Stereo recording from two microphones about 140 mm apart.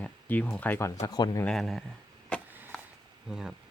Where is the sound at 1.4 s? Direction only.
Centre (ahead or behind).